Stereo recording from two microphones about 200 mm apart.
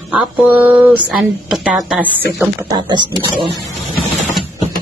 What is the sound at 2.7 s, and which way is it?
Speech, 20° right (ahead or behind).